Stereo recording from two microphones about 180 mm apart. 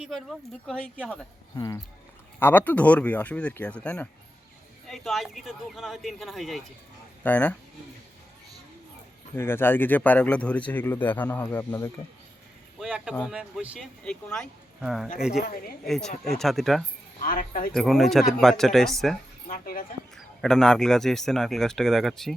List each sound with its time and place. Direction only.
0.0 s speech: centre (ahead or behind)
1.5 s speech: 20° left (ahead or behind)
9.3 s speech: 10° left (ahead or behind)
12.8 s a sound: 5° right (ahead or behind)
13.1 s speech: 5° right (ahead or behind)
15.4 s speech: 55° left (ahead or behind)
15.8 s speech: centre (ahead or behind)
17.2 s speech: 50° left (ahead or behind)
17.7 s speech: centre (ahead or behind)
19.5 s speech: 55° left (ahead or behind)
20.1 s speech: centre (ahead or behind)